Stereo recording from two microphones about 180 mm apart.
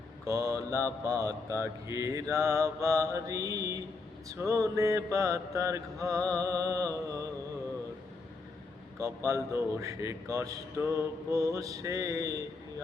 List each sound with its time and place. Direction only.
0.3 s mantra: 15° right (ahead or behind)
9.0 s mantra: 15° right (ahead or behind)